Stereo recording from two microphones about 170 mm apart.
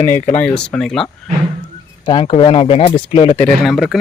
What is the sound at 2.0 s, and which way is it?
Speech, 30° left (ahead or behind).